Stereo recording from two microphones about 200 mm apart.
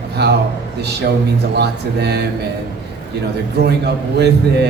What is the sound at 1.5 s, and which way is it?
Speech, 55° right (ahead or behind).